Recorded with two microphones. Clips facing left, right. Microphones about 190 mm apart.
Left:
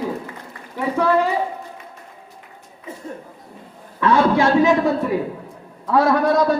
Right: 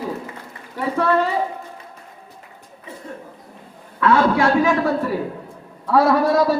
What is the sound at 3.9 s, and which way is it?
Speech, 20° left (ahead or behind).